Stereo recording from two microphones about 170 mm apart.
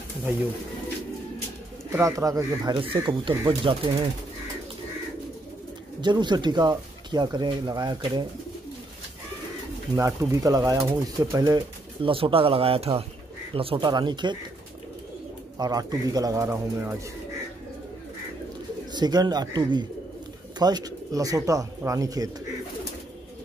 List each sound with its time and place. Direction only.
1.9 s speech: 15° right (ahead or behind)
5.9 s speech: 25° right (ahead or behind)
9.9 s speech: 20° right (ahead or behind)
12.0 s speech: 30° right (ahead or behind)
15.5 s speech: 20° right (ahead or behind)
18.9 s speech: 25° right (ahead or behind)